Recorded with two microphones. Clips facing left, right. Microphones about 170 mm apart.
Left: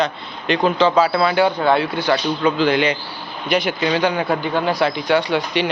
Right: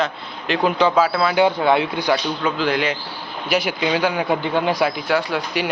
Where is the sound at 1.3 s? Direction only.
15° right (ahead or behind).